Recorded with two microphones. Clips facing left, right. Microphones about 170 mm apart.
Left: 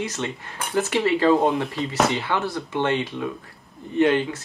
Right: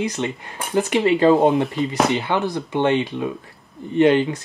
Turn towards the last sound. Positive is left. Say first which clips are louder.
# right 4 dB
turn(degrees=-15)  # may be behind; listen again after turning